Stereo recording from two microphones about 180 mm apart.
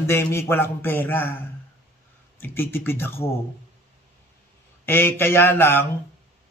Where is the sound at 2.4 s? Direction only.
10° left (ahead or behind).